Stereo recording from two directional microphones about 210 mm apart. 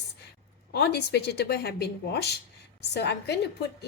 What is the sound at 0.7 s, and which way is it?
A woman's voice, 50° left (ahead or behind).